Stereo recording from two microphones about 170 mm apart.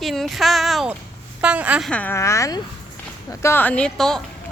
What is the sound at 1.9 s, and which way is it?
A woman's voice, 10° left (ahead or behind).